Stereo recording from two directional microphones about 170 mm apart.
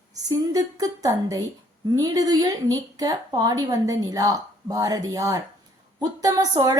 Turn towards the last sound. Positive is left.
turn(degrees=-20)  # may be behind; listen again after turning